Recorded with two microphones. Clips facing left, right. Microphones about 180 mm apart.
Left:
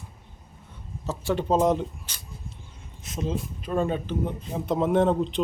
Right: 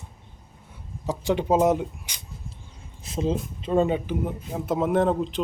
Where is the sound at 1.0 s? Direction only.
15° right (ahead or behind).